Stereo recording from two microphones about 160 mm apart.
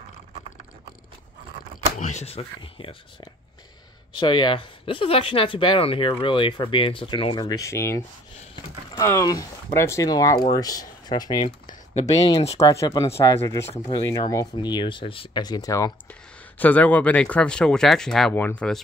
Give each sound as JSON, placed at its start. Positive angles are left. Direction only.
{"t": 2.0, "sound": "speech", "side_deg": 45}
{"t": 7.4, "sound": "speech", "side_deg": 20}
{"t": 11.9, "sound": "speech", "side_deg": 40}
{"t": 12.3, "sound": "speech", "side_deg": 25}
{"t": 16.1, "sound": "speech", "side_deg": 10}